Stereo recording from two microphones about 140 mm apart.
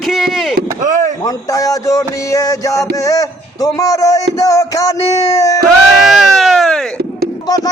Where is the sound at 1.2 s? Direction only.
25° left (ahead or behind).